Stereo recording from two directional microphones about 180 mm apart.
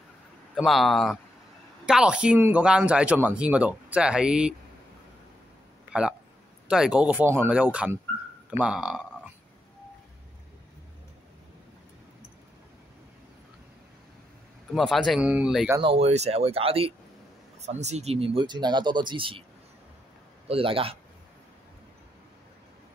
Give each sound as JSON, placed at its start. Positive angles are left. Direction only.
{"t": 0.6, "sound": "speech", "side_deg": 0}
{"t": 5.9, "sound": "speech", "side_deg": -5}
{"t": 14.7, "sound": "speech", "side_deg": 0}
{"t": 15.8, "sound": "speech", "side_deg": -35}
{"t": 20.4, "sound": "speech", "side_deg": -30}